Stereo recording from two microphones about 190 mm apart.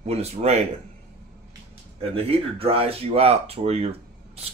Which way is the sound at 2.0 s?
30° right (ahead or behind).